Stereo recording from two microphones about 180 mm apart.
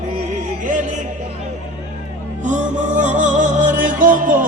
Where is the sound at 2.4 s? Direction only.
45° right (ahead or behind).